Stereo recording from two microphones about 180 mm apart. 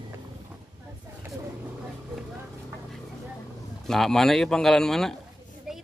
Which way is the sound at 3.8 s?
Centre (ahead or behind).